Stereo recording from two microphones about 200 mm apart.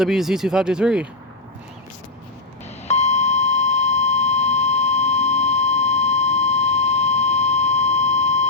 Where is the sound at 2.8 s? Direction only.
35° left (ahead or behind).